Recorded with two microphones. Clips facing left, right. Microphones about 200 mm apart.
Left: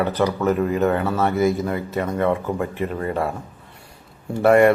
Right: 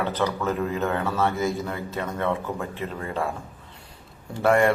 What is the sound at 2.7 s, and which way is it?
Speech, 60° left (ahead or behind).